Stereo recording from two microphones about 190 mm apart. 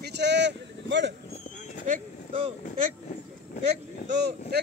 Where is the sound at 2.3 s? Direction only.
30° right (ahead or behind).